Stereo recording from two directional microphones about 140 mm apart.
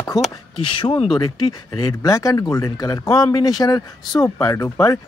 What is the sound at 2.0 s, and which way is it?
Speech, 25° left (ahead or behind).